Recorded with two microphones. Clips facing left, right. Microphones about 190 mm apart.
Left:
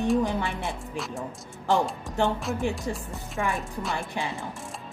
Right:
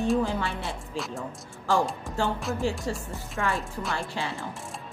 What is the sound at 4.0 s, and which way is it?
Speech, 15° left (ahead or behind).